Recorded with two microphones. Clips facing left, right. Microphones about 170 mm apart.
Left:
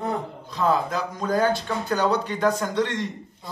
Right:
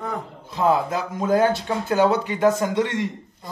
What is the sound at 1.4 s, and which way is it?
Speech, 25° right (ahead or behind).